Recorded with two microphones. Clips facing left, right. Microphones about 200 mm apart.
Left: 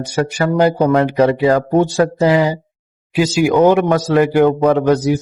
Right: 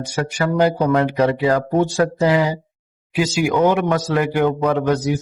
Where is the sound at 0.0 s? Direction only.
35° left (ahead or behind).